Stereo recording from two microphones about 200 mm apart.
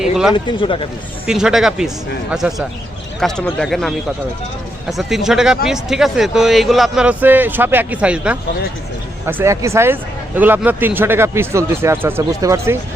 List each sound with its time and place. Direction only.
0.0 s speech: centre (ahead or behind)
0.3 s speech: 25° left (ahead or behind)
1.3 s a man's voice: 5° right (ahead or behind)